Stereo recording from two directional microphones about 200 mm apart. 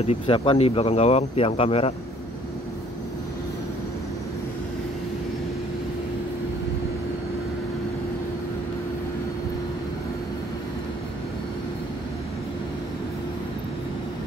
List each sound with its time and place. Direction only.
0.0 s speech: 30° left (ahead or behind)